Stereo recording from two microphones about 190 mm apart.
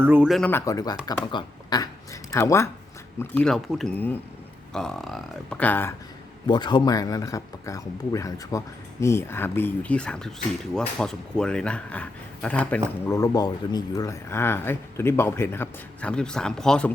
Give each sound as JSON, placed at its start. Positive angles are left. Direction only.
{"t": 0.0, "sound": "speech", "side_deg": -10}
{"t": 0.5, "sound": "speech", "side_deg": 15}
{"t": 6.5, "sound": "speech", "side_deg": 25}
{"t": 13.1, "sound": "speech", "side_deg": 20}